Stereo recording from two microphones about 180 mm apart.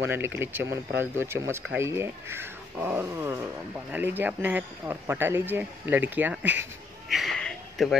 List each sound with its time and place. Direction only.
0.0 s speech: 15° right (ahead or behind)